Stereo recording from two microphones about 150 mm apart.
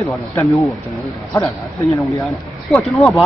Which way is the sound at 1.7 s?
20° left (ahead or behind).